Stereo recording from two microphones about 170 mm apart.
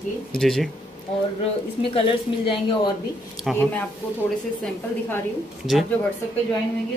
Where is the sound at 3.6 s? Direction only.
10° left (ahead or behind).